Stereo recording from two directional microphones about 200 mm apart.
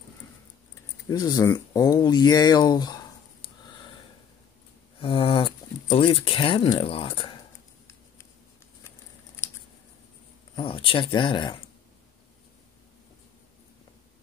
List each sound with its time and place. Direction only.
1.0 s speech: 20° left (ahead or behind)
5.0 s speech: 25° left (ahead or behind)
10.5 s speech: 25° left (ahead or behind)